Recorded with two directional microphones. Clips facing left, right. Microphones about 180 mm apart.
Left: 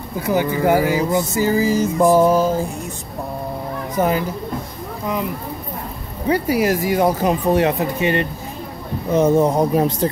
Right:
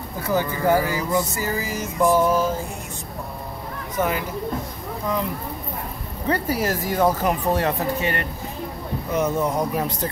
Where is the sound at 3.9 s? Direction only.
35° left (ahead or behind).